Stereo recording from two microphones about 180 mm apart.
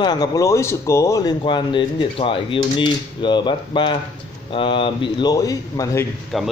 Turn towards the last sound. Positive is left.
turn(degrees=0)  # may be behind; listen again after turning